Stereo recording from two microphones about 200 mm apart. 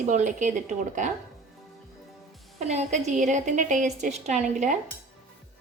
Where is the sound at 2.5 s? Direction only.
35° right (ahead or behind).